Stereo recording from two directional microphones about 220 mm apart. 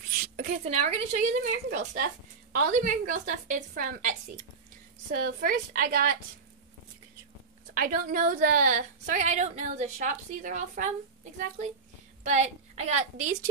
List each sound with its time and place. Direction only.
0.2 s a woman's voice: 35° right (ahead or behind)
7.7 s a woman's voice: 40° right (ahead or behind)
12.2 s a woman's voice: 30° right (ahead or behind)